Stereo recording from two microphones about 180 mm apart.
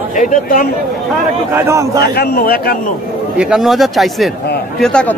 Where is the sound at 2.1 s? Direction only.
55° left (ahead or behind).